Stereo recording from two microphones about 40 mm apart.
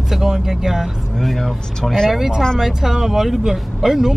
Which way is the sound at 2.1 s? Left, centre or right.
Centre.